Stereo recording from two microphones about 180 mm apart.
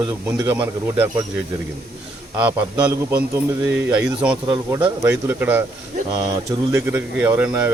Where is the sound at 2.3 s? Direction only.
10° right (ahead or behind).